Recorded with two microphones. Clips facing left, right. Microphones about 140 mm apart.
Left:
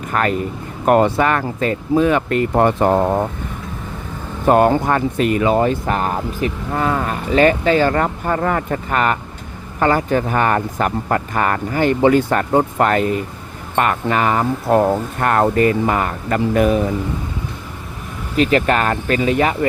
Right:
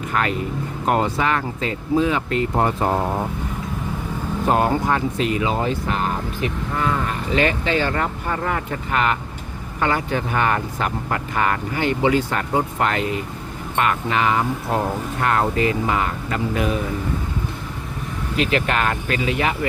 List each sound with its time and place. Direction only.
0.1 s speech: 45° left (ahead or behind)
0.9 s speech: 60° left (ahead or behind)
4.4 s speech: 55° left (ahead or behind)
18.3 s speech: 40° left (ahead or behind)